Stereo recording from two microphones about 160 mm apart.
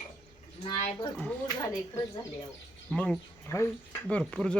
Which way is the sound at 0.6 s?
40° left (ahead or behind).